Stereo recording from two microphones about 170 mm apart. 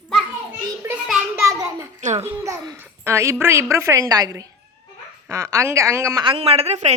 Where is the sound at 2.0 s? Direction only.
45° right (ahead or behind).